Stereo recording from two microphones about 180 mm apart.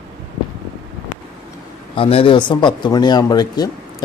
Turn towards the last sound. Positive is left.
turn(degrees=20)  # may be behind; listen again after turning